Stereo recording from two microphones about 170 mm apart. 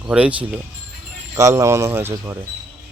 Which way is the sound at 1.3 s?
20° right (ahead or behind).